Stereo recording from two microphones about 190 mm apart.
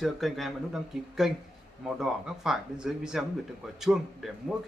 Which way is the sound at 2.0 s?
Centre (ahead or behind).